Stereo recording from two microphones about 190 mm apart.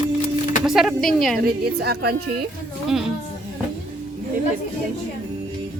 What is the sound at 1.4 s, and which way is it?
Speech, 55° right (ahead or behind).